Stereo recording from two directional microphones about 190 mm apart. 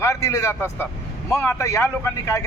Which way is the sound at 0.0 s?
15° left (ahead or behind).